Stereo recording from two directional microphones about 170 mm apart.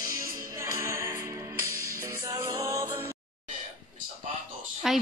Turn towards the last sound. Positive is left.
turn(degrees=0)  # may be behind; listen again after turning